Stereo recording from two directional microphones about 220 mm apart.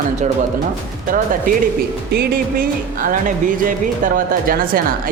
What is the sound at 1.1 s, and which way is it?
A woman's voice, 40° right (ahead or behind).